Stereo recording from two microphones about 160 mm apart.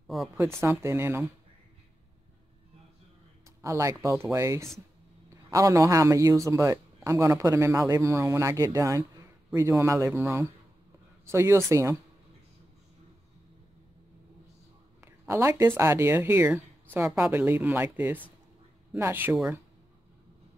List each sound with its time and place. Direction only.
0.4 s speech: 15° right (ahead or behind)
3.6 s a man's voice: 20° right (ahead or behind)
15.0 s speech: 15° right (ahead or behind)